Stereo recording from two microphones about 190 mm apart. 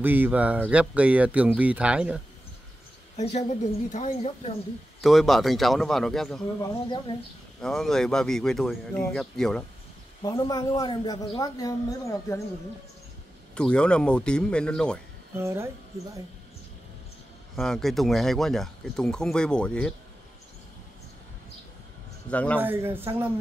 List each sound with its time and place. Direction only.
0.0 s speech: 10° right (ahead or behind)
3.2 s speech: 40° left (ahead or behind)
5.0 s speech: centre (ahead or behind)
6.6 s a woman's voice: 25° left (ahead or behind)
7.6 s speech: centre (ahead or behind)
10.3 s a woman's voice: 20° left (ahead or behind)
13.6 s speech: 5° left (ahead or behind)
15.3 s speech: 15° right (ahead or behind)
17.6 s speech: centre (ahead or behind)
22.3 s a man's voice: 5° left (ahead or behind)
22.6 s speech: 10° right (ahead or behind)